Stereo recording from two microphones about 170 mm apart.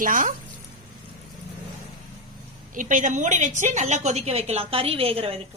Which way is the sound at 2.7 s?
50° right (ahead or behind).